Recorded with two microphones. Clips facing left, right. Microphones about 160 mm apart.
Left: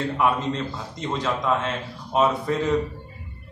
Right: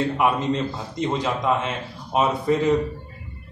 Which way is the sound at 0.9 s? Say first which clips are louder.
Right 2 dB; 15° right (ahead or behind).